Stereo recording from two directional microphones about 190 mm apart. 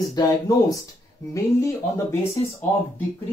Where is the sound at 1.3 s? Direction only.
15° left (ahead or behind).